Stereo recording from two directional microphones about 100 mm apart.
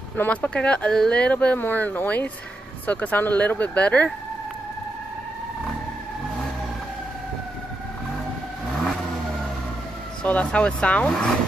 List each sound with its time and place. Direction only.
0.1 s speech: 15° left (ahead or behind)
8.6 s vehicle: 5° left (ahead or behind)
10.2 s speech: 10° left (ahead or behind)